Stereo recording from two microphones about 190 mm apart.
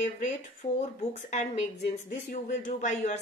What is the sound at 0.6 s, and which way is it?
Speech, 30° left (ahead or behind).